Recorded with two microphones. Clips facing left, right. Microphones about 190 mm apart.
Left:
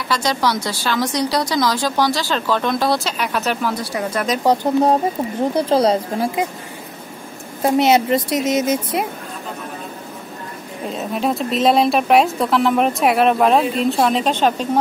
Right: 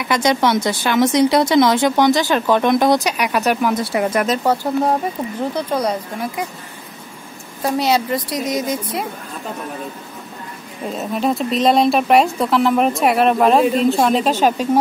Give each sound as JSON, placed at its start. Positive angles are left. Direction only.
{"t": 0.1, "sound": "speech", "side_deg": -20}
{"t": 4.1, "sound": "speech", "side_deg": -5}
{"t": 5.7, "sound": "a woman's voice", "side_deg": 30}
{"t": 7.6, "sound": "a woman's voice", "side_deg": 20}
{"t": 10.9, "sound": "speech", "side_deg": 0}